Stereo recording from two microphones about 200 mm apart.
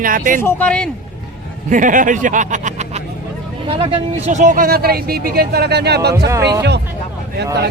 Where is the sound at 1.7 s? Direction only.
40° right (ahead or behind).